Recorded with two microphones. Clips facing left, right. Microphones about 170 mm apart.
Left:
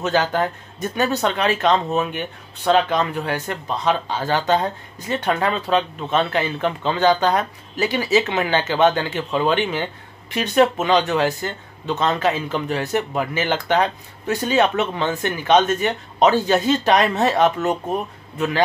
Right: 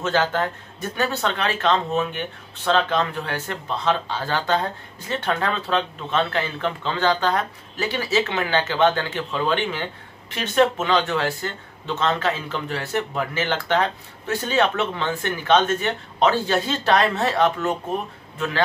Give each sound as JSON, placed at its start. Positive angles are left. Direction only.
{"t": 0.0, "sound": "speech", "side_deg": 15}